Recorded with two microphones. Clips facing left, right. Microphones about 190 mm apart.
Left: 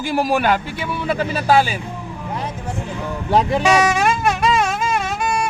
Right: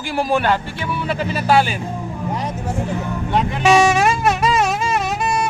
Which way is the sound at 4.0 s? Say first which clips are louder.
Right 1 dB; 5° right (ahead or behind).